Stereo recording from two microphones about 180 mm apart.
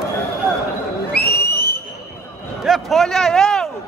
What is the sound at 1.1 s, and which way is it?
Whistle, 60° left (ahead or behind).